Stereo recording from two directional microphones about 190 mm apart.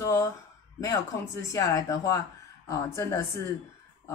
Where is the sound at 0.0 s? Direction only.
15° left (ahead or behind).